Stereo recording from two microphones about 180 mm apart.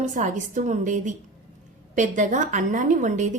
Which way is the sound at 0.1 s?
45° right (ahead or behind).